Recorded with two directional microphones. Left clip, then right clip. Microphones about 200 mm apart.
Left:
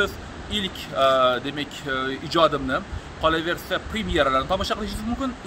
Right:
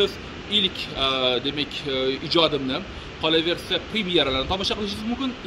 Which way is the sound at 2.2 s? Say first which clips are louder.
Left 3 dB; 15° left (ahead or behind).